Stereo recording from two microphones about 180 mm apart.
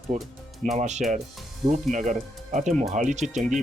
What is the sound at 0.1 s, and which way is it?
Speech, 45° right (ahead or behind).